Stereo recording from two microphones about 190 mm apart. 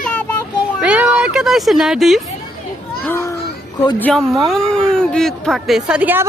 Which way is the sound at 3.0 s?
15° left (ahead or behind).